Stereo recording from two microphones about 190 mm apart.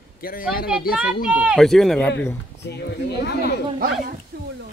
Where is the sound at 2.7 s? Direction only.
60° left (ahead or behind).